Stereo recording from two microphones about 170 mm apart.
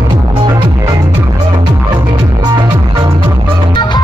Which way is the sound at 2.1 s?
25° right (ahead or behind).